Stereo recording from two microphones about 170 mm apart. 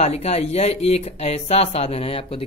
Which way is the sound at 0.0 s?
40° left (ahead or behind).